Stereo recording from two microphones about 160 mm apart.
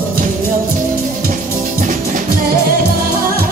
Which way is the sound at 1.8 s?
55° right (ahead or behind).